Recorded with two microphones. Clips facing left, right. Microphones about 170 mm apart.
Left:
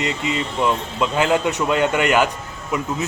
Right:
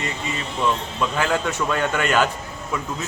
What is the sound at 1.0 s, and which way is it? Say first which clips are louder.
A man's voice: left 6 dB; 15° left (ahead or behind).